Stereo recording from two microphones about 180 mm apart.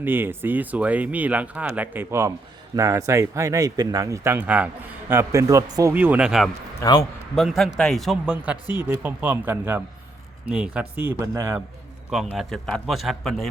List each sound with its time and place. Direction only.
0.0 s a man's voice: 10° right (ahead or behind)
6.7 s a man's voice: 20° left (ahead or behind)
7.3 s a man's voice: centre (ahead or behind)
12.1 s a man's voice: 5° right (ahead or behind)